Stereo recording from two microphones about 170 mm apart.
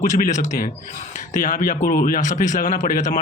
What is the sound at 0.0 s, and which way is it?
Speech, 45° left (ahead or behind).